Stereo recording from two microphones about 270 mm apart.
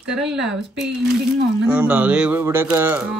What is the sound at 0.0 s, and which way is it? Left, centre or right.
Speech, centre.